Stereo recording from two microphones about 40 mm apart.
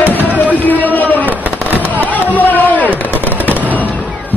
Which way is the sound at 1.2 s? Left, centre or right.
Right.